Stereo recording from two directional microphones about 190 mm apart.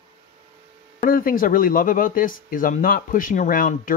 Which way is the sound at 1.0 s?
45° left (ahead or behind).